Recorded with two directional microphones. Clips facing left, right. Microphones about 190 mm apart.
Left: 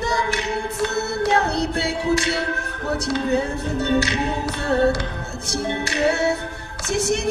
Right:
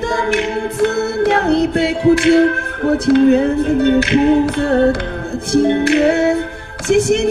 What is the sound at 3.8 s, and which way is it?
A capella, 55° right (ahead or behind).